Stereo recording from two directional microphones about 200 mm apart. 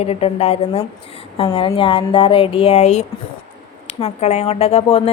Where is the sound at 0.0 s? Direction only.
30° left (ahead or behind).